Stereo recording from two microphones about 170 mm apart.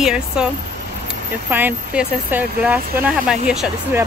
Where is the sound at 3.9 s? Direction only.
15° right (ahead or behind).